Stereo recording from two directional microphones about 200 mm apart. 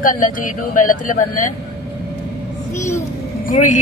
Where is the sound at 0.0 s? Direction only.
40° left (ahead or behind).